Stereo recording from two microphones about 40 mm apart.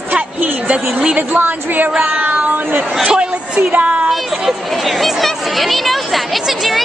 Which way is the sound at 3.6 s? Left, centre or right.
Right.